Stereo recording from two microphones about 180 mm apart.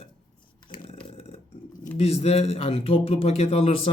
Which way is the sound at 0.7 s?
30° left (ahead or behind).